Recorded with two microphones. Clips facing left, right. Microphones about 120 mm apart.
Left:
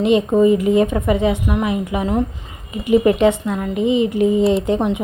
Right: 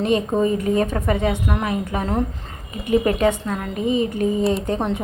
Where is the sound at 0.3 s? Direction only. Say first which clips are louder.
Left 6 dB; 15° left (ahead or behind).